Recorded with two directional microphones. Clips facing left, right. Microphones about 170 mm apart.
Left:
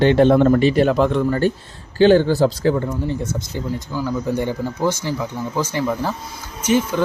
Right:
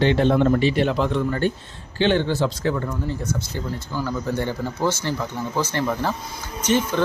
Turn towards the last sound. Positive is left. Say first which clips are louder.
# left 3 dB
turn(degrees=10)  # may be behind; listen again after turning